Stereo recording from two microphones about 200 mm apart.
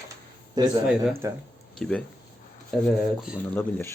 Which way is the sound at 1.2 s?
15° right (ahead or behind).